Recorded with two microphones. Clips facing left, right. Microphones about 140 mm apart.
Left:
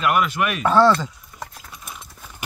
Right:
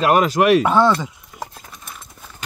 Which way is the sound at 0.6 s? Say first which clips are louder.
Even; 20° right (ahead or behind).